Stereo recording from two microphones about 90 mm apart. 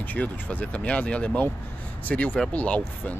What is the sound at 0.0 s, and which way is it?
Speech, 15° left (ahead or behind).